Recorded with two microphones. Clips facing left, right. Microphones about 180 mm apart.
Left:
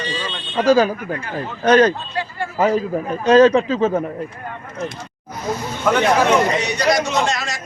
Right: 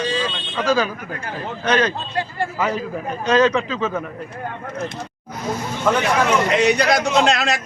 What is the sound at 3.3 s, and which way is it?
Speech, 35° left (ahead or behind).